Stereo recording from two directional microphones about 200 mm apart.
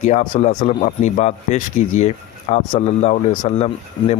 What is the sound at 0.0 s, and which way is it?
Speech, 35° left (ahead or behind).